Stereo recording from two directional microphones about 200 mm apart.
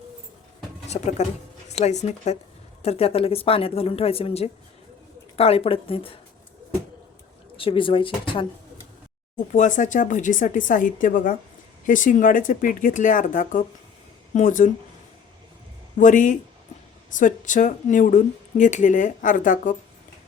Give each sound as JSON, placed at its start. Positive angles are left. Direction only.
{"t": 0.9, "sound": "speech", "side_deg": 35}
{"t": 7.5, "sound": "speech", "side_deg": 25}
{"t": 9.5, "sound": "speech", "side_deg": 40}
{"t": 16.0, "sound": "speech", "side_deg": 40}